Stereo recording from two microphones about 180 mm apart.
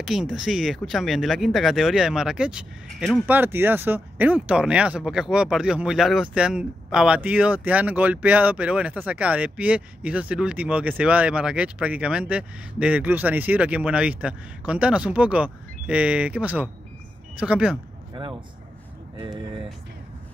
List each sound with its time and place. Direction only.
0.0 s speech: 5° right (ahead or behind)
19.1 s speech: 25° right (ahead or behind)